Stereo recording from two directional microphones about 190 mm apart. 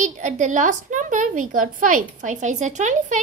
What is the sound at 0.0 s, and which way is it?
A woman's voice, 40° right (ahead or behind).